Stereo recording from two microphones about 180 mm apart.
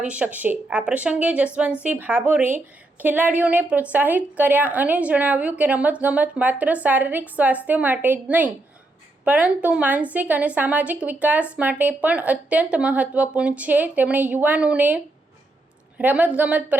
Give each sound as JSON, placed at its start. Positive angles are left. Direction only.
{"t": 0.0, "sound": "a woman's voice", "side_deg": -5}